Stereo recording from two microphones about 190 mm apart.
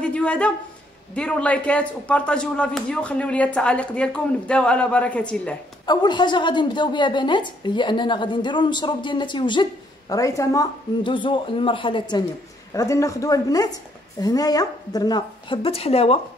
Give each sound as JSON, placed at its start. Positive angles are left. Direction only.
{"t": 0.0, "sound": "a sound", "side_deg": 5}
{"t": 1.1, "sound": "speech", "side_deg": 5}
{"t": 5.9, "sound": "a woman's voice", "side_deg": 25}